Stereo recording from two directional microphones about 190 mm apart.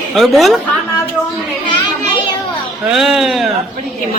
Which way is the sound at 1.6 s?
25° left (ahead or behind).